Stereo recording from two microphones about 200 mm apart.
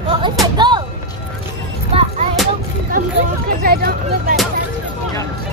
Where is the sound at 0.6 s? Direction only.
20° right (ahead or behind).